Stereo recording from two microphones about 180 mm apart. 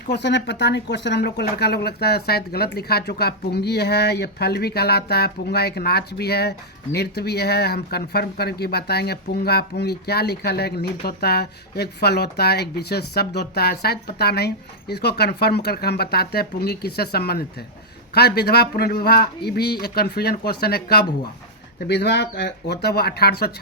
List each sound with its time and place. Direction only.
0.1 s speech: 75° left (ahead or behind)